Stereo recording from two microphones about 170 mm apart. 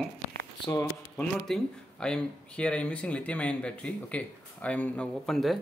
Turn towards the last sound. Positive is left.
turn(degrees=0)  # may be behind; listen again after turning